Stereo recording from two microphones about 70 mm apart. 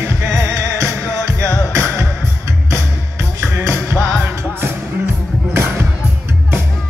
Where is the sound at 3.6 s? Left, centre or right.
Right.